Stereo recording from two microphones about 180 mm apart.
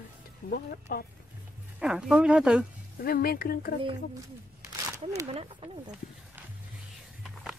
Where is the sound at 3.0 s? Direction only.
55° left (ahead or behind).